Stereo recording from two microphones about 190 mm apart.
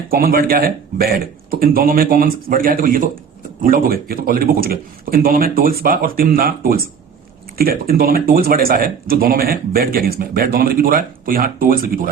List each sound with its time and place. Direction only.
0.1 s speech: 50° right (ahead or behind)